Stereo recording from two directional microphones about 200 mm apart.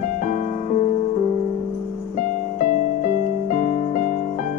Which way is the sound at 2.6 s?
40° left (ahead or behind).